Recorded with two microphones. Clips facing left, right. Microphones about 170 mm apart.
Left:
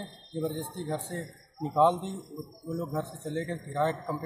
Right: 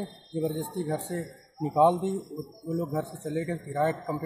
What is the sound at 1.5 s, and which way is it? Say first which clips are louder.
Speech: right 2 dB; 5° right (ahead or behind).